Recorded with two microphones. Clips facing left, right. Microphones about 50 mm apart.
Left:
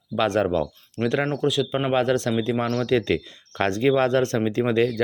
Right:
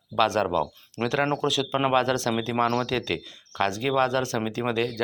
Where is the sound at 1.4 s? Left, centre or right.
Centre.